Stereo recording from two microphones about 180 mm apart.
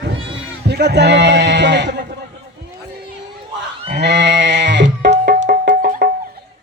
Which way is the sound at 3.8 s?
75° right (ahead or behind).